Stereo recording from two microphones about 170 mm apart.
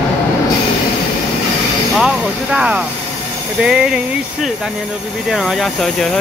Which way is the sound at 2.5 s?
5° right (ahead or behind).